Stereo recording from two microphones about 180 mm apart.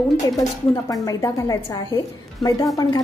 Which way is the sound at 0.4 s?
20° left (ahead or behind).